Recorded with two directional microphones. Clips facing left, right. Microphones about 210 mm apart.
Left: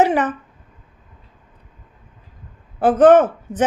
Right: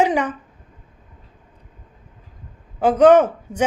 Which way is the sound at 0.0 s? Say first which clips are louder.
Left 2 dB; 10° right (ahead or behind).